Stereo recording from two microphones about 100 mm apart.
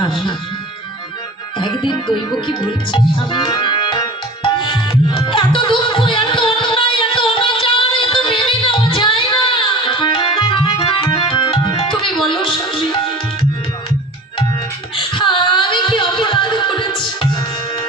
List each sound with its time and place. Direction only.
0.0 s speech: 50° left (ahead or behind)
1.5 s speech: 50° left (ahead or behind)
4.4 s music: 55° left (ahead or behind)
14.9 s a sound: 55° left (ahead or behind)